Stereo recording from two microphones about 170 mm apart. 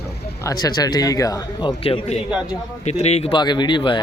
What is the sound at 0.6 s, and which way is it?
Speech, 20° left (ahead or behind).